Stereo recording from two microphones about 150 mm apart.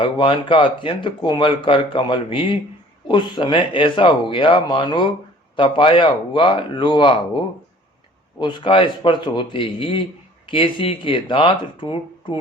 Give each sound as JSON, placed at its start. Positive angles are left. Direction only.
{"t": 0.0, "sound": "speech", "side_deg": 35}
{"t": 8.4, "sound": "speech", "side_deg": 30}